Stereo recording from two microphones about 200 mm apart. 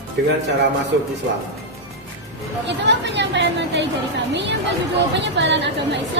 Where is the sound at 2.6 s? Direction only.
60° right (ahead or behind).